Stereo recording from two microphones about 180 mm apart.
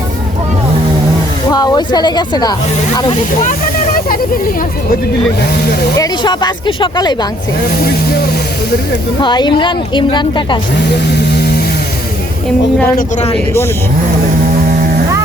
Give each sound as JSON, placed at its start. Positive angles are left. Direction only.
{"t": 1.5, "sound": "speech", "side_deg": 20}
{"t": 6.0, "sound": "a woman's voice", "side_deg": 25}
{"t": 9.2, "sound": "a woman's voice", "side_deg": 25}
{"t": 10.9, "sound": "a sound", "side_deg": 65}